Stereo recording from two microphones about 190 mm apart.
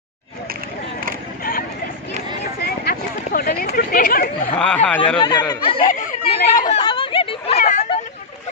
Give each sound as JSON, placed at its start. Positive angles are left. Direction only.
{"t": 2.4, "sound": "chatter", "side_deg": 55}
{"t": 4.6, "sound": "speech", "side_deg": 5}
{"t": 5.2, "sound": "speech", "side_deg": 25}
{"t": 5.9, "sound": "chatter", "side_deg": 45}
{"t": 6.7, "sound": "chatter", "side_deg": 25}